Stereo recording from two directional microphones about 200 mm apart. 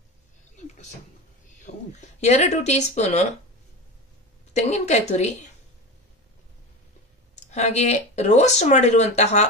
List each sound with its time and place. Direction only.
1.6 s speech: 35° left (ahead or behind)
4.6 s speech: 35° left (ahead or behind)
7.5 s speech: 35° left (ahead or behind)